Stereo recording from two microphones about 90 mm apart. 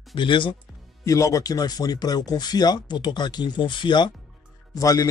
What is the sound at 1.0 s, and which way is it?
Speech, 35° left (ahead or behind).